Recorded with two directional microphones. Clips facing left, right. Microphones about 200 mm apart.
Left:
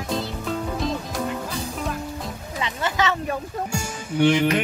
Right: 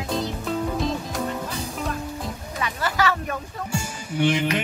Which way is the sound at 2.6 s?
20° left (ahead or behind).